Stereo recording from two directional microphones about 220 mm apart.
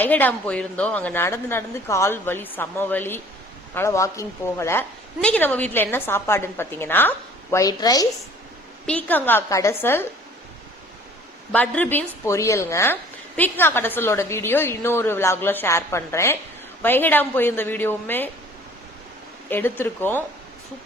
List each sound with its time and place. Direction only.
0.0 s a woman's voice: 10° left (ahead or behind)
8.9 s a woman's voice: 5° left (ahead or behind)
11.5 s a woman's voice: 5° left (ahead or behind)
19.5 s a woman's voice: 10° left (ahead or behind)